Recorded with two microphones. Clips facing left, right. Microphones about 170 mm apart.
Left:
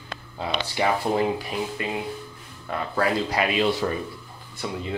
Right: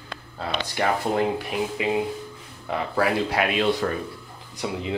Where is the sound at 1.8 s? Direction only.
90° right.